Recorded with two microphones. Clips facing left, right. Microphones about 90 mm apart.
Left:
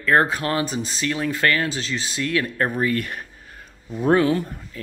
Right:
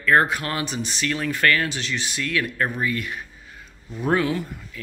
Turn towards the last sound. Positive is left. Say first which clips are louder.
# left 4 dB
turn(degrees=30)  # may be behind; listen again after turning